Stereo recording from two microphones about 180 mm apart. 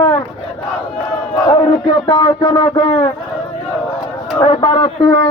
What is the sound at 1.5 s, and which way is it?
A man's voice, 30° left (ahead or behind).